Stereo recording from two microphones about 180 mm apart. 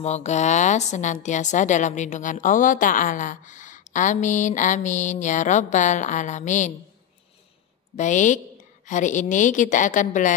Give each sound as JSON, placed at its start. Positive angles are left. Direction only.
{"t": 0.0, "sound": "a woman's voice", "side_deg": 40}
{"t": 7.9, "sound": "a woman's voice", "side_deg": 45}